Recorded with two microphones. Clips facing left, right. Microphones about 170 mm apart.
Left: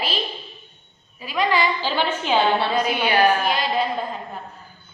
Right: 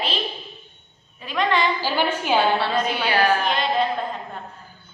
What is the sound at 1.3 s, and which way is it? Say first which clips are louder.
Speech: even; 5° left (ahead or behind).